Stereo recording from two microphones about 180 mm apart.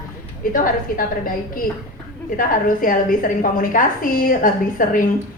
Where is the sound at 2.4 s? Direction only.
50° left (ahead or behind).